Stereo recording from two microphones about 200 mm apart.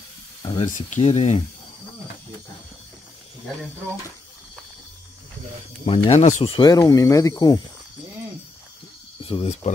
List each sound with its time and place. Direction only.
0.5 s speech: 30° left (ahead or behind)
6.0 s speech: 35° left (ahead or behind)
6.5 s speech: 20° left (ahead or behind)
9.2 s speech: 30° left (ahead or behind)